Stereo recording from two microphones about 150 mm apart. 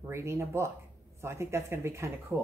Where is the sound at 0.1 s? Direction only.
15° right (ahead or behind).